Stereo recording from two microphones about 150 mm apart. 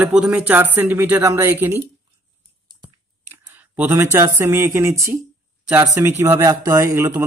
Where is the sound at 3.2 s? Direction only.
15° right (ahead or behind).